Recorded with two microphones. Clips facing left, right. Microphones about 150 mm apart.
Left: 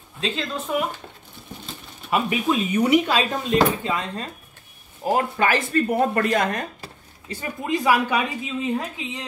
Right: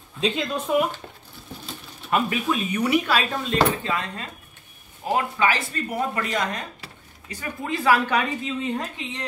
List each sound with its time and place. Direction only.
0.2 s speech: 10° right (ahead or behind)
2.0 s speech: 10° left (ahead or behind)
5.0 s speech: 45° left (ahead or behind)
7.2 s speech: 25° left (ahead or behind)
7.7 s a woman's voice: 15° left (ahead or behind)